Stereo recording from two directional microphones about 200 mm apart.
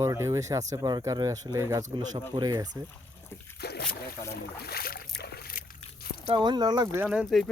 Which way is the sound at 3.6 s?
55° left (ahead or behind).